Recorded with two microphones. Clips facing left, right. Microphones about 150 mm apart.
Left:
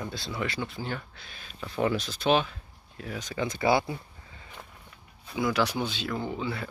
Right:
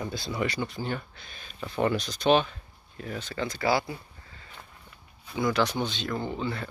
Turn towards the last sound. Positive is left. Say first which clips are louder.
# right 1 dB
turn(degrees=5)  # may be behind; listen again after turning